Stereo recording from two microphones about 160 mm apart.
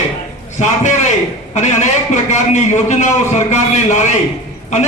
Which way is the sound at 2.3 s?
45° left (ahead or behind).